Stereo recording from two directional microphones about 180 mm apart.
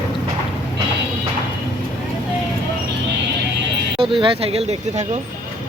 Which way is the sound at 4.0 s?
30° right (ahead or behind).